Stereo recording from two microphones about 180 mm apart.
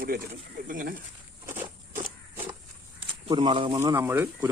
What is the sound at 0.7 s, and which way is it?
Speech, 50° right (ahead or behind).